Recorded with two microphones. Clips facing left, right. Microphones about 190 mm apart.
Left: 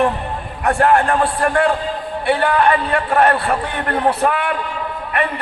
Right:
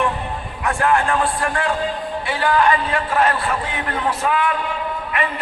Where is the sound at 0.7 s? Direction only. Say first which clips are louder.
Left 5 dB; 60° left (ahead or behind).